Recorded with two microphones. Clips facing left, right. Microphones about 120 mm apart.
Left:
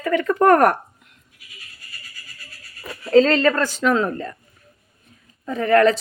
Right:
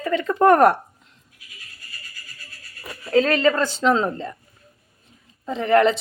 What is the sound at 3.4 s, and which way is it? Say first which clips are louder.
Speech: even; 20° right (ahead or behind).